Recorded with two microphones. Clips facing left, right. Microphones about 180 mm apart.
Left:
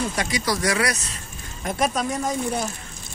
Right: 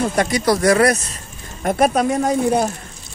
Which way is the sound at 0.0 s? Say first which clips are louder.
Right 8 dB; 55° right (ahead or behind).